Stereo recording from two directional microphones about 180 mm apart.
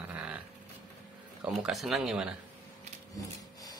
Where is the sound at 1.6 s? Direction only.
Centre (ahead or behind).